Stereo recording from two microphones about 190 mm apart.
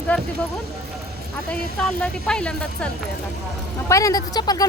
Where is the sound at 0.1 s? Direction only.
10° left (ahead or behind).